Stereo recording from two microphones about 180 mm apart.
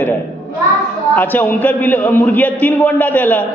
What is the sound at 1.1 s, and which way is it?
A man's voice, 10° left (ahead or behind).